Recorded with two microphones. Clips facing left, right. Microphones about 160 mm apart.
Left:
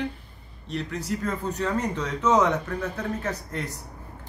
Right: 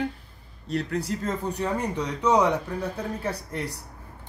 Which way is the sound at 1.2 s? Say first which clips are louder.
Even; 15° right (ahead or behind).